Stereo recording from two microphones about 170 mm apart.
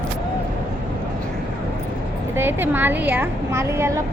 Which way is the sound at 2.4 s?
10° right (ahead or behind).